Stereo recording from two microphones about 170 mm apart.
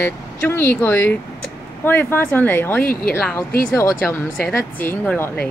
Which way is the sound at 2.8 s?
60° left (ahead or behind).